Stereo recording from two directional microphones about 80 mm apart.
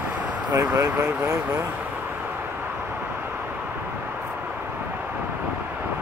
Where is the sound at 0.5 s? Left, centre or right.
Right.